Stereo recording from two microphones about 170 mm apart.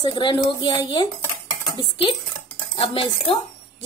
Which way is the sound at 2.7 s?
35° left (ahead or behind).